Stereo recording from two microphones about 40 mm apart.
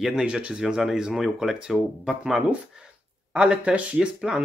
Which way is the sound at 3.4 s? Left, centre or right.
Right.